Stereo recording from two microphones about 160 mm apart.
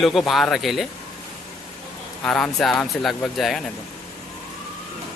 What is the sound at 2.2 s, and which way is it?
Speech, 5° left (ahead or behind).